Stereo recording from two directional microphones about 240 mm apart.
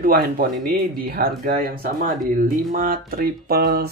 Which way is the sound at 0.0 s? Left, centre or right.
Right.